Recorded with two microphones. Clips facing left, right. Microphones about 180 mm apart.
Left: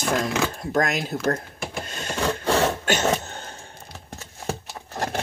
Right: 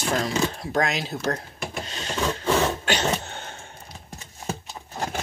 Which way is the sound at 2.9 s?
45° left (ahead or behind).